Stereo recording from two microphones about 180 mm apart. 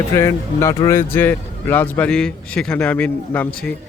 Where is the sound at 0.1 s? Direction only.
15° left (ahead or behind).